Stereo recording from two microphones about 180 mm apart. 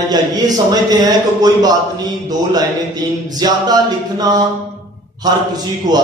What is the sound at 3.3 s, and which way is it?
Speech, 20° right (ahead or behind).